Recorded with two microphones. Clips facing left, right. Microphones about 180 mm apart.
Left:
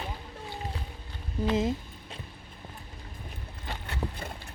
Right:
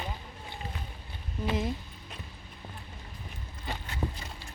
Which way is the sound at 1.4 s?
35° left (ahead or behind).